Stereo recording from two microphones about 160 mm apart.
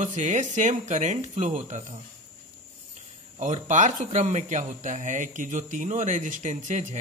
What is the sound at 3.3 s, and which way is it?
Speech, 50° right (ahead or behind).